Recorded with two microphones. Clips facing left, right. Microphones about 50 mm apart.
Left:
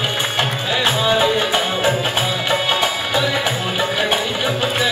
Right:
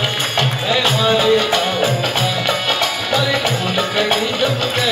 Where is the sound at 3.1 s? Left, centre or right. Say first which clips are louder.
Right 4 dB; left.